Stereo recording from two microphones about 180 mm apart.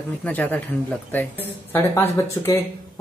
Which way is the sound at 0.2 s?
10° left (ahead or behind).